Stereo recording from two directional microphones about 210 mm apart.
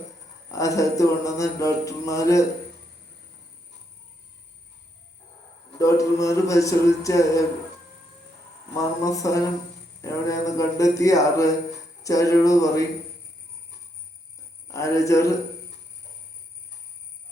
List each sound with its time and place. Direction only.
0.5 s music: 15° left (ahead or behind)
5.8 s music: 15° left (ahead or behind)
8.8 s music: 15° left (ahead or behind)
14.7 s music: 15° left (ahead or behind)